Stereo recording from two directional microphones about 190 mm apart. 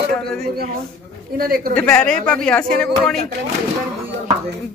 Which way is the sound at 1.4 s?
50° right (ahead or behind).